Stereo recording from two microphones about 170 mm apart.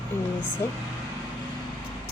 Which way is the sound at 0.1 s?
15° left (ahead or behind).